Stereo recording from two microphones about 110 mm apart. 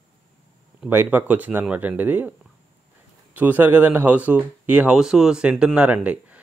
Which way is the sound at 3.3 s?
15° right (ahead or behind).